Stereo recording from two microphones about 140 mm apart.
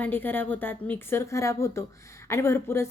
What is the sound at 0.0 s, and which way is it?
Speech, 15° left (ahead or behind).